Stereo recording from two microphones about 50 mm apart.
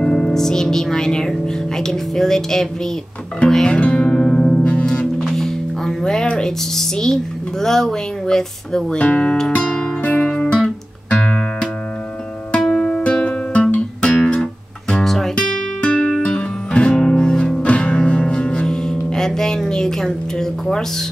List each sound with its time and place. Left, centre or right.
0.0 s speech: centre
3.7 s music: left
5.2 s music: centre
6.2 s speech: centre
8.9 s speech: left
9.6 s music: centre
10.0 s guitar: left
12.5 s music: centre
15.3 s music: left